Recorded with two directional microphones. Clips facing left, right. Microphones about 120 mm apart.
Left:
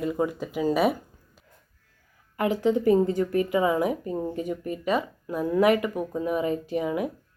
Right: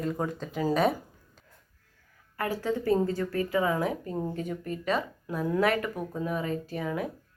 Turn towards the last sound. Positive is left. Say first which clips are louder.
# left 5 dB
turn(degrees=15)  # may be behind; listen again after turning